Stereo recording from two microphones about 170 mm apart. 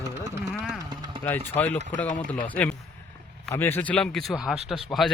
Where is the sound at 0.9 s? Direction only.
25° right (ahead or behind).